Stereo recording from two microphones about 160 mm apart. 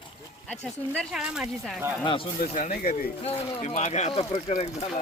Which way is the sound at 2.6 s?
45° left (ahead or behind).